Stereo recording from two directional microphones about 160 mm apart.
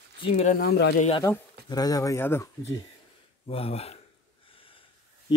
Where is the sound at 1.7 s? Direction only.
25° left (ahead or behind).